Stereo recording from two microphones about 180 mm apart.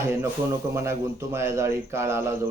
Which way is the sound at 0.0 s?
15° right (ahead or behind).